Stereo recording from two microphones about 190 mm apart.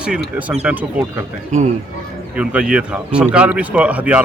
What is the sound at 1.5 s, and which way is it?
Speech, 40° right (ahead or behind).